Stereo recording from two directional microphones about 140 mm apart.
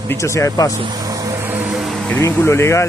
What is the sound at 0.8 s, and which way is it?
Vehicle, 30° right (ahead or behind).